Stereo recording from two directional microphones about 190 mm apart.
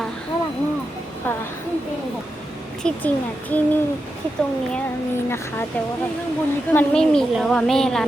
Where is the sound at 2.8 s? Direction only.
10° left (ahead or behind).